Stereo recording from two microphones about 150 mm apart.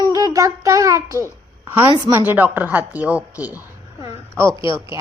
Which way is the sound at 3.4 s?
10° right (ahead or behind).